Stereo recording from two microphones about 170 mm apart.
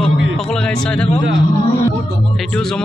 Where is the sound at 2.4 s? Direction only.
5° left (ahead or behind).